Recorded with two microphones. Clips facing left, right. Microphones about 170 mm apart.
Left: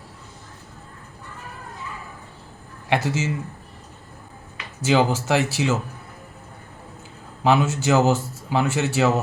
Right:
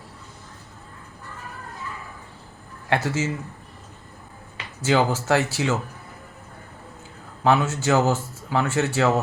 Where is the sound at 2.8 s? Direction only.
15° left (ahead or behind).